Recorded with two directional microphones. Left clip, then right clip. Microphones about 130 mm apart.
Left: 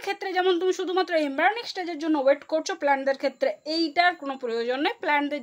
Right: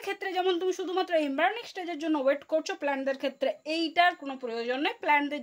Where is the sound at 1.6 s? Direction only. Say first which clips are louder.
Left 4 dB; 10° right (ahead or behind).